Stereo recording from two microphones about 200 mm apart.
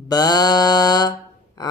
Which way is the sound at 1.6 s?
20° left (ahead or behind).